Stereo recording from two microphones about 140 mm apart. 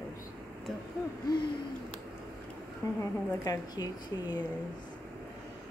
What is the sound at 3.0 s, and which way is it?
A woman's voice, 25° left (ahead or behind).